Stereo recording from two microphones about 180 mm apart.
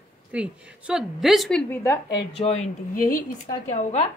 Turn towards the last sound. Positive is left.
turn(degrees=50)  # may be behind; listen again after turning